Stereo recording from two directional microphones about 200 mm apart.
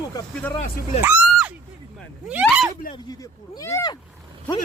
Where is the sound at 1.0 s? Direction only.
10° right (ahead or behind).